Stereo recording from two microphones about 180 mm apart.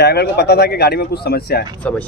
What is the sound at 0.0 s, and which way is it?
Speech, 65° left (ahead or behind).